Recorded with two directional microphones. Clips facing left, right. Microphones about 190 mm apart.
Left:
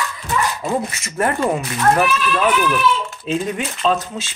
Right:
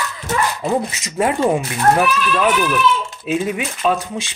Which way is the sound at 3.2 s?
5° right (ahead or behind).